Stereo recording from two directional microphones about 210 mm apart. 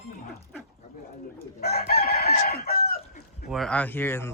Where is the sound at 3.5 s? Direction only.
5° left (ahead or behind).